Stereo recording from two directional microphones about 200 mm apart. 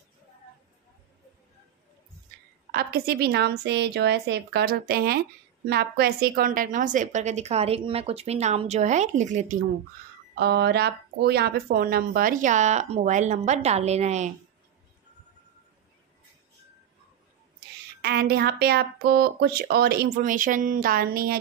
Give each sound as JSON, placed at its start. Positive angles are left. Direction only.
{"t": 2.7, "sound": "speech", "side_deg": -50}
{"t": 10.3, "sound": "speech", "side_deg": -55}
{"t": 18.0, "sound": "speech", "side_deg": -50}